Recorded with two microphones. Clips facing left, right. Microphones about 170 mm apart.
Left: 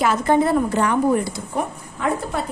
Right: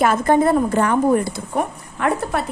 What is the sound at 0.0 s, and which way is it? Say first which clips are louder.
Speech: right 2 dB; 50° right (ahead or behind).